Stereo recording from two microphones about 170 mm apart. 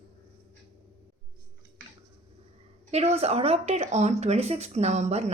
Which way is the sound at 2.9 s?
40° right (ahead or behind).